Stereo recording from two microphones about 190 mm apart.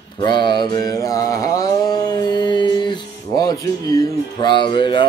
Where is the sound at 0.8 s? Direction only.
20° left (ahead or behind).